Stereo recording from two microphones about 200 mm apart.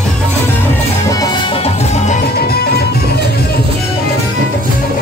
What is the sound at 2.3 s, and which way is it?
Music, 50° left (ahead or behind).